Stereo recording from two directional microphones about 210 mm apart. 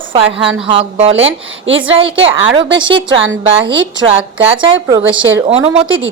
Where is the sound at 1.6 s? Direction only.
65° right (ahead or behind).